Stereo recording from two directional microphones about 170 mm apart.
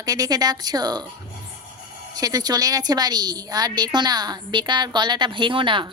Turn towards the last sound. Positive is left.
turn(degrees=-30)  # may be behind; listen again after turning